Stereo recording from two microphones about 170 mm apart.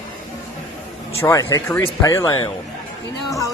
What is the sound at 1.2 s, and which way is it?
Speech, 20° left (ahead or behind).